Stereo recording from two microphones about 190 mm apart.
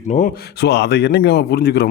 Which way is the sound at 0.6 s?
60° left (ahead or behind).